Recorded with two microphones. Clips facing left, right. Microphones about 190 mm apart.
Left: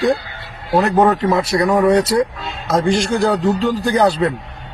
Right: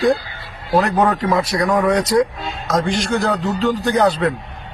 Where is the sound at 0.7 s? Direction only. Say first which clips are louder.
Left 2 dB; 20° left (ahead or behind).